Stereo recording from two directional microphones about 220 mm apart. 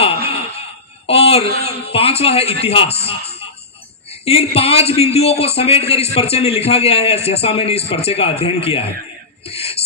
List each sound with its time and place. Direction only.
1.0 s speech: 25° left (ahead or behind)